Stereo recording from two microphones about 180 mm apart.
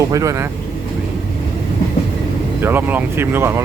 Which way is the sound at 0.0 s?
20° right (ahead or behind).